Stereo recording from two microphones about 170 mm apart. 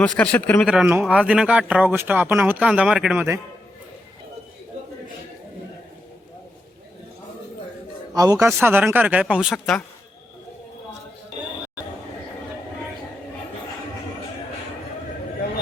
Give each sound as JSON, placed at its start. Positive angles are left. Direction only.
{"t": 0.0, "sound": "speech", "side_deg": 5}
{"t": 0.7, "sound": "speech", "side_deg": -5}
{"t": 8.1, "sound": "a man's voice", "side_deg": -20}